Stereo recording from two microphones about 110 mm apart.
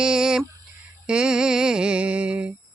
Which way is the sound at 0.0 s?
5° right (ahead or behind).